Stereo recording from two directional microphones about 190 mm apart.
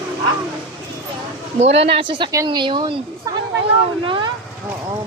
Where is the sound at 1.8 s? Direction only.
25° right (ahead or behind).